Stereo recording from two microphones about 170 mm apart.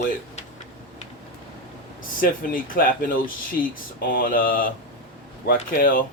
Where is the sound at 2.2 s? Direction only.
55° left (ahead or behind).